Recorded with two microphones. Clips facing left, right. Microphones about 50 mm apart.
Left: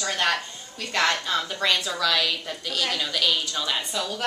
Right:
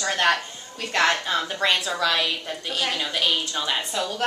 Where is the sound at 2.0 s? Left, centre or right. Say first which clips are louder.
Right 1 dB; right.